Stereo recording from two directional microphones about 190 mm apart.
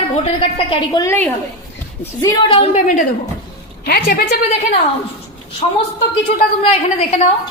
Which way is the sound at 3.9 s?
50° left (ahead or behind).